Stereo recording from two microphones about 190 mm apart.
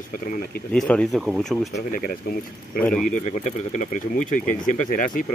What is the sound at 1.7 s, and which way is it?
Speech, 50° left (ahead or behind).